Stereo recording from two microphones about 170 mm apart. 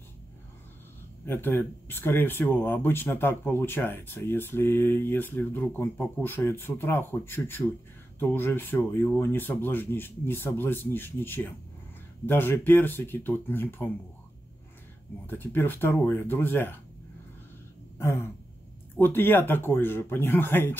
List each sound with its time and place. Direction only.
1.2 s speech: 15° left (ahead or behind)
15.2 s speech: 10° left (ahead or behind)
17.9 s a sound: 15° left (ahead or behind)
18.9 s speech: 10° left (ahead or behind)